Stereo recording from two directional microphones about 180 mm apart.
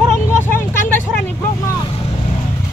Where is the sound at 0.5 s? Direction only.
10° left (ahead or behind).